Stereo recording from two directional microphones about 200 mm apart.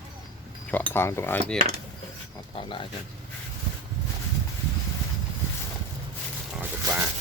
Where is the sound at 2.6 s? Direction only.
25° left (ahead or behind).